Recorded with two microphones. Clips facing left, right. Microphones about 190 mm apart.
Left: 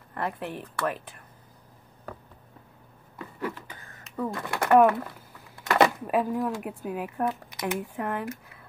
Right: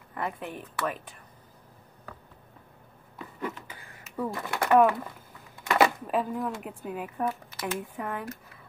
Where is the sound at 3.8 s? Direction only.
10° right (ahead or behind).